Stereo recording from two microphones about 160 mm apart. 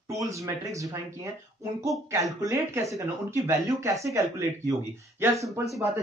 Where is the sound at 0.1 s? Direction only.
20° right (ahead or behind).